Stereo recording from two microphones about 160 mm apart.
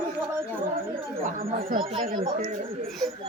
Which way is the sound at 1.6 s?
65° right (ahead or behind).